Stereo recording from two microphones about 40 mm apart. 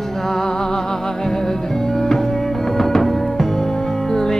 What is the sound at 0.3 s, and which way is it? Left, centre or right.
Music, centre.